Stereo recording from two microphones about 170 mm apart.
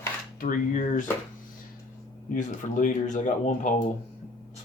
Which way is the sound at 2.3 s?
50° left (ahead or behind).